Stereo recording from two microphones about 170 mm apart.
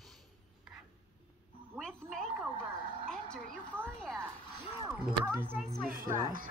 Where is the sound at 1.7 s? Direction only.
5° left (ahead or behind).